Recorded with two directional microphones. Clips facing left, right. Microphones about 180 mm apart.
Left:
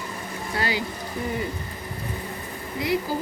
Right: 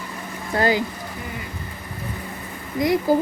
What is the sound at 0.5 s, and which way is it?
Speech, 45° right (ahead or behind).